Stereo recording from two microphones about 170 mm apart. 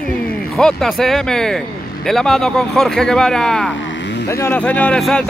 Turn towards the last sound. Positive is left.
turn(degrees=5)  # may be behind; listen again after turning